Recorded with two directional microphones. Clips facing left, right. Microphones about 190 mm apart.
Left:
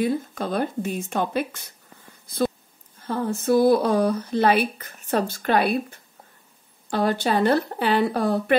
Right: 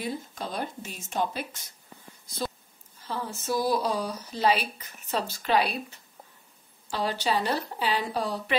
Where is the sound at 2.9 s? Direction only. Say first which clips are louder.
Left 9 dB; 55° left (ahead or behind).